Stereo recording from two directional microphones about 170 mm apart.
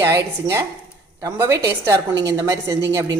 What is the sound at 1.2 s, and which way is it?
Speech, 15° right (ahead or behind).